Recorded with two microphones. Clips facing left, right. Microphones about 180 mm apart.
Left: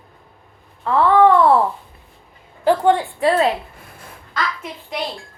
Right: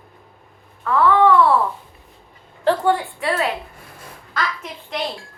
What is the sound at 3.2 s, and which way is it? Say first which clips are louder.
Speech: left 6 dB; 30° left (ahead or behind).